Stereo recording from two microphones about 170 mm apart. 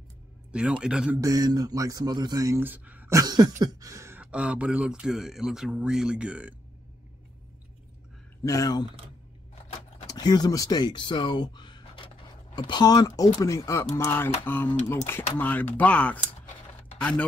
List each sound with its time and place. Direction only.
0.5 s speech: 5° right (ahead or behind)
1.2 s speech: 20° right (ahead or behind)
3.2 s speech: 25° right (ahead or behind)
4.2 s speech: 5° right (ahead or behind)
8.5 s speech: 20° left (ahead or behind)
10.0 s speech: 20° left (ahead or behind)